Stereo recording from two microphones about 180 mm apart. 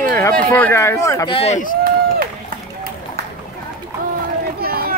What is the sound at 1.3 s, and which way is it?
Speech, 35° left (ahead or behind).